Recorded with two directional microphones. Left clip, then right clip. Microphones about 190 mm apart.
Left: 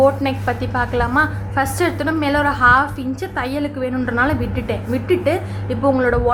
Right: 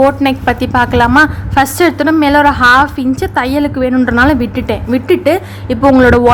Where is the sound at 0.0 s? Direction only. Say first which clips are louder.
Right 6 dB; 40° right (ahead or behind).